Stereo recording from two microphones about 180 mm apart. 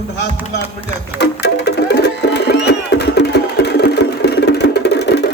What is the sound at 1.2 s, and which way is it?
Music, 70° left (ahead or behind).